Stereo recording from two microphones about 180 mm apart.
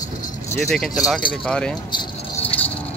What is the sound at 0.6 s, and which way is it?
Speech, centre (ahead or behind).